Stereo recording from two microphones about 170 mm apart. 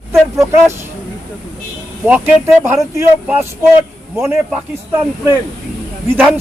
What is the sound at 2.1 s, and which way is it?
A man's voice, 10° right (ahead or behind).